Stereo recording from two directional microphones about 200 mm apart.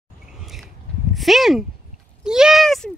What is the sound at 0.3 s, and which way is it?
Chewing, centre (ahead or behind).